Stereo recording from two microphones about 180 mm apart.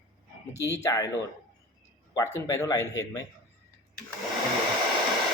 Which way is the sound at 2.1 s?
15° left (ahead or behind).